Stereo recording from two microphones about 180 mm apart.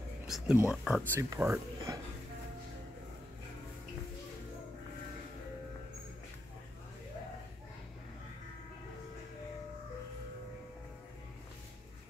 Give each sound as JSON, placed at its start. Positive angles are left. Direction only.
{"t": 0.2, "sound": "speech", "side_deg": -5}
{"t": 1.3, "sound": "speech", "side_deg": -15}